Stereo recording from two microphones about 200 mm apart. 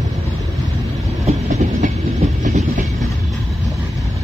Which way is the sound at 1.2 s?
35° right (ahead or behind).